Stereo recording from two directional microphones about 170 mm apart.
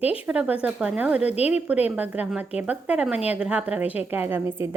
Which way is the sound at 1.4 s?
10° right (ahead or behind).